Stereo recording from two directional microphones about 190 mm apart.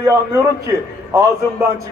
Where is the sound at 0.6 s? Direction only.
15° right (ahead or behind).